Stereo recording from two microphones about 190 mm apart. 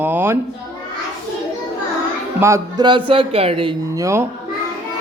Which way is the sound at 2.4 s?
20° right (ahead or behind).